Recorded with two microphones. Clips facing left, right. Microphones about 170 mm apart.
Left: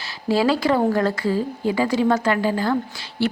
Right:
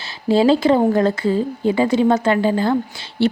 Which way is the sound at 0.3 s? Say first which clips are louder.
Right 5 dB; 25° right (ahead or behind).